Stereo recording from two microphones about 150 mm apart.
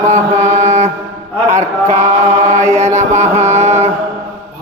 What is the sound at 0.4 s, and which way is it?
Mantra, 50° right (ahead or behind).